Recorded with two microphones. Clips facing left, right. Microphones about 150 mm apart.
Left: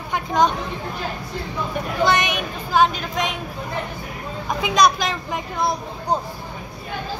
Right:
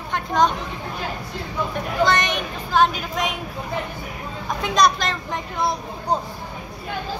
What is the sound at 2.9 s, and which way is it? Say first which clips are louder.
Speech: left 1 dB; 5° right (ahead or behind).